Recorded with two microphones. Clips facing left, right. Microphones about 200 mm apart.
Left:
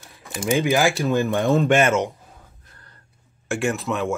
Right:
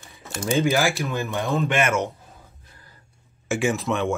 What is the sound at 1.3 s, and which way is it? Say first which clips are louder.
Speech: left 4 dB; 50° left (ahead or behind).